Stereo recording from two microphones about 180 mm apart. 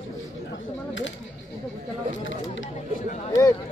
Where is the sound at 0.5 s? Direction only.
90° left.